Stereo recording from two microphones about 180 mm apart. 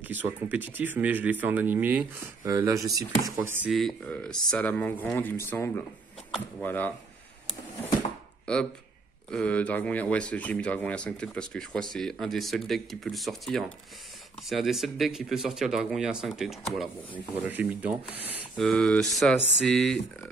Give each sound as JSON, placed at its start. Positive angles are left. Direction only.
{"t": 0.1, "sound": "speech", "side_deg": -10}
{"t": 3.3, "sound": "speech", "side_deg": -10}
{"t": 3.7, "sound": "speech", "side_deg": 5}
{"t": 8.5, "sound": "speech", "side_deg": 5}
{"t": 18.6, "sound": "speech", "side_deg": 5}